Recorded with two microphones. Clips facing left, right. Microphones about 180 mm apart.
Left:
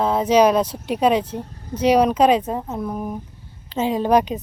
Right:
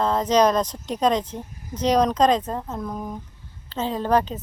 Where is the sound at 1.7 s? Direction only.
10° left (ahead or behind).